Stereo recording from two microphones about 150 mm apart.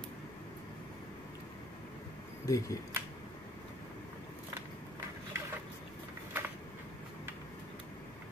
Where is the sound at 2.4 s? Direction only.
20° left (ahead or behind).